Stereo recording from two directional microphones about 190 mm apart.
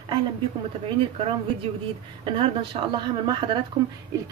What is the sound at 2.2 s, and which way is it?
A woman's voice, 25° right (ahead or behind).